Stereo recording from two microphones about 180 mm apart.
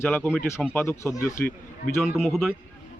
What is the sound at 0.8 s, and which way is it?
Speech, 15° left (ahead or behind).